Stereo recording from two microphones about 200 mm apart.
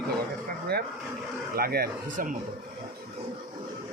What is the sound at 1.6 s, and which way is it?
Speech, 50° right (ahead or behind).